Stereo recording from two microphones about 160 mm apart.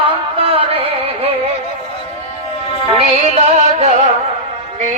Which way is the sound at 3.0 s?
45° right (ahead or behind).